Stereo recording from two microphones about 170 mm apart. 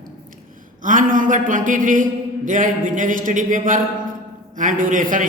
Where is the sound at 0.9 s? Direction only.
50° right (ahead or behind).